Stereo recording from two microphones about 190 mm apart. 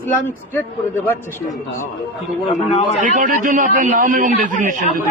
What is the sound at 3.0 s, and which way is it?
A man's voice, 45° right (ahead or behind).